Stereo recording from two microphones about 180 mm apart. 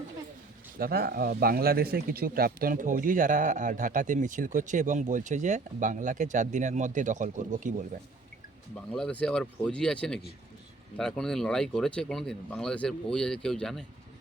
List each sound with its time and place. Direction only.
0.8 s speech: 60° right (ahead or behind)
8.7 s speech: 5° left (ahead or behind)